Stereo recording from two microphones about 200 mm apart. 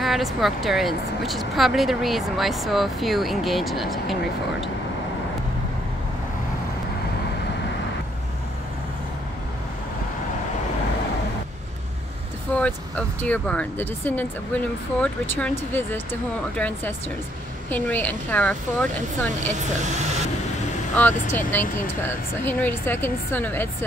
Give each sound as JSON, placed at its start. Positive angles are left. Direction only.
{"t": 0.0, "sound": "speech", "side_deg": 0}
{"t": 12.5, "sound": "speech", "side_deg": 5}
{"t": 19.6, "sound": "speech", "side_deg": -35}
{"t": 20.9, "sound": "speech", "side_deg": 10}